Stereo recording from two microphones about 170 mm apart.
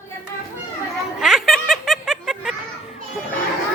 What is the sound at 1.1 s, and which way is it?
Snicker, 5° right (ahead or behind).